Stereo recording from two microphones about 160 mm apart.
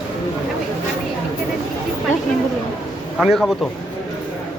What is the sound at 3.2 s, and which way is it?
Speech, centre (ahead or behind).